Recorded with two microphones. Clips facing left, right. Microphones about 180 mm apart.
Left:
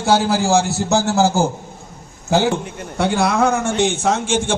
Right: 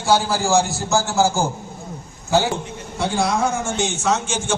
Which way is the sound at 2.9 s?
60° left (ahead or behind).